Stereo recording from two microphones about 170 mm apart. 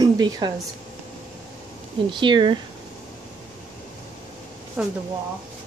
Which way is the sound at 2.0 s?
30° right (ahead or behind).